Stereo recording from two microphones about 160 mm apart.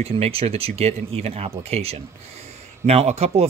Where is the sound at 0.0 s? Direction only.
40° right (ahead or behind).